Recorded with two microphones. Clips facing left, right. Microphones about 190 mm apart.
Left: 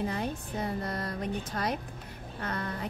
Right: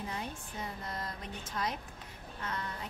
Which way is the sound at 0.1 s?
60° left (ahead or behind).